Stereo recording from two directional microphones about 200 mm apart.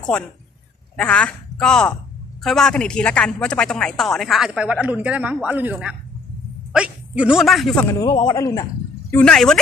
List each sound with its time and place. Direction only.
0.9 s a woman's voice: 5° left (ahead or behind)
7.9 s speech: 25° left (ahead or behind)
9.1 s a woman's voice: 5° left (ahead or behind)